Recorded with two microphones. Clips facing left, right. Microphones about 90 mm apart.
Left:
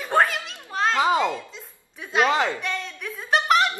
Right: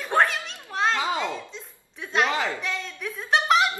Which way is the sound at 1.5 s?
5° left (ahead or behind).